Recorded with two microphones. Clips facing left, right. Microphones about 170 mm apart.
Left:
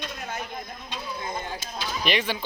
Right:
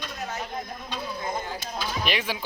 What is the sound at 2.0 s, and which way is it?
Speech, 5° right (ahead or behind).